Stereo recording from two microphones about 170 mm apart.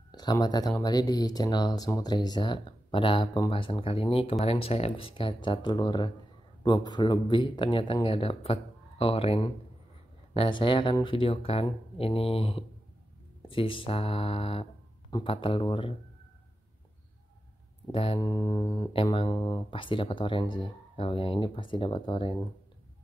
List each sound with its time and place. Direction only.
0.1 s speech: 25° left (ahead or behind)
17.9 s speech: 35° left (ahead or behind)